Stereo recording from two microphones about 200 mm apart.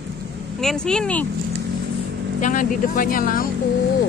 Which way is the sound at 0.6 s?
5° left (ahead or behind).